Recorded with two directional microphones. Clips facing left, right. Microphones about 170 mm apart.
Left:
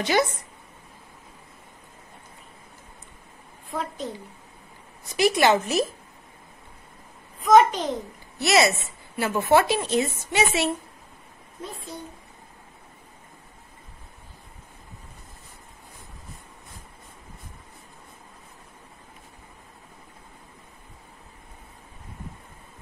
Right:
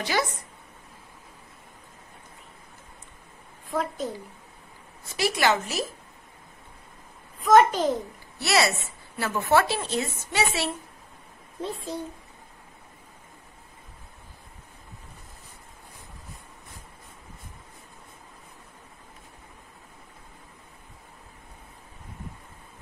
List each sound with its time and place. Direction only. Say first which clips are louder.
3.7 s a child's voice: right 2 dB; centre (ahead or behind)
5.0 s a woman's voice: left 4 dB; 15° left (ahead or behind)
7.4 s a child's voice: left 1 dB; centre (ahead or behind)
8.4 s a woman's voice: left 3 dB; 20° left (ahead or behind)
11.6 s speech: right 5 dB; 30° right (ahead or behind)